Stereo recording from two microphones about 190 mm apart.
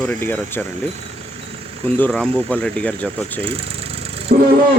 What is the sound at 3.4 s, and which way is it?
Engine, 30° right (ahead or behind).